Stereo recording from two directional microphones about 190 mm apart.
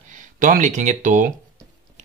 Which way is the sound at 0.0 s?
40° right (ahead or behind).